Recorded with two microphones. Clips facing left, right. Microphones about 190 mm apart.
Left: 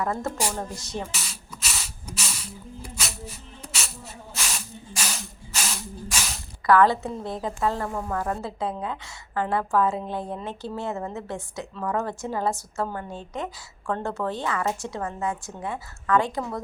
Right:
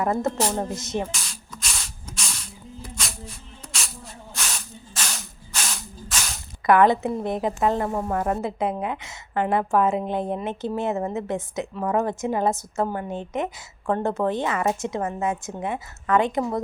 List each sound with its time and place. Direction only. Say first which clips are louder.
0.0 s a woman's voice: right 4 dB; 20° right (ahead or behind)
1.1 s spray: even; 5° left (ahead or behind)
4.4 s a sound: even; 5° left (ahead or behind)
6.7 s a woman's voice: right 2 dB; 20° right (ahead or behind)